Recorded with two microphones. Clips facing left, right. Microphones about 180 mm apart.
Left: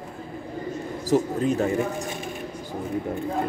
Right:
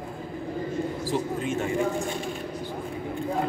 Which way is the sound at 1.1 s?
40° left (ahead or behind).